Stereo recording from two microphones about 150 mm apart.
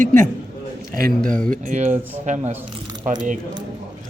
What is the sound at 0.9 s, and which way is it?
A man's voice, 70° right (ahead or behind).